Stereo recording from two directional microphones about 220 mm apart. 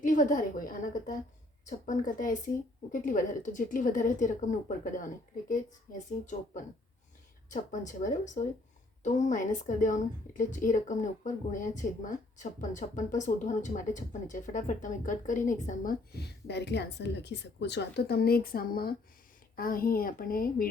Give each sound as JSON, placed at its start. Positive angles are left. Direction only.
{"t": 0.0, "sound": "speech", "side_deg": 35}